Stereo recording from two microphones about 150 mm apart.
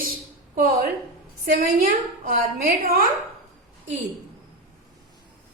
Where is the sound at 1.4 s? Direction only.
90° right.